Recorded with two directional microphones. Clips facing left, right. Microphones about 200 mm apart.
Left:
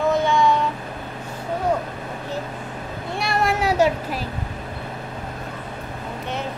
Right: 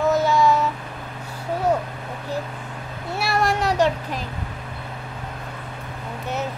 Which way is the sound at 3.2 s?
Centre (ahead or behind).